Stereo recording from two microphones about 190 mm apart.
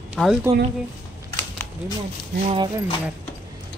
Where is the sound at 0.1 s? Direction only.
5° right (ahead or behind).